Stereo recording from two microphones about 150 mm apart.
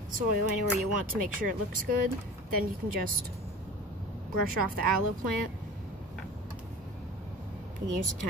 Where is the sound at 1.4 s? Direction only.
70° right (ahead or behind).